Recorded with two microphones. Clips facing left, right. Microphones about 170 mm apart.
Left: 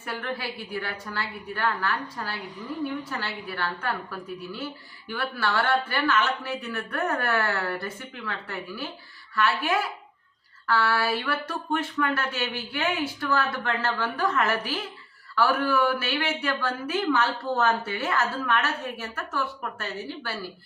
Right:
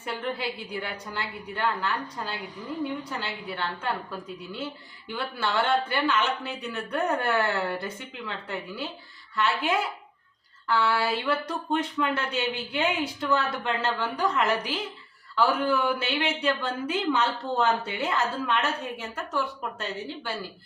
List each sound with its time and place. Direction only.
0.0 s a woman's voice: 20° right (ahead or behind)